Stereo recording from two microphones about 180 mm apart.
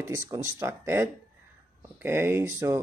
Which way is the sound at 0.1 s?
15° right (ahead or behind).